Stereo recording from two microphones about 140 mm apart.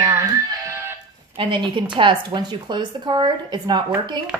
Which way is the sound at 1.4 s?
35° right (ahead or behind).